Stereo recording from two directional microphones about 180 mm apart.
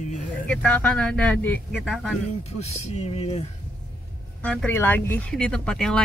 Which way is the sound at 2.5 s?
35° left (ahead or behind).